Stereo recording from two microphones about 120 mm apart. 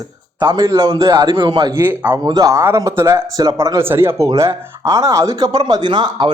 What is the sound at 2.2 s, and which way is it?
Speech, 35° right (ahead or behind).